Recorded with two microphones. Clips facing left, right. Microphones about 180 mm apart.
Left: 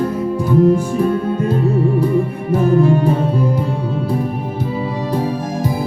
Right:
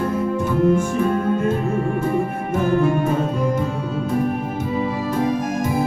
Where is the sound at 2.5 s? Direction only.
35° left (ahead or behind).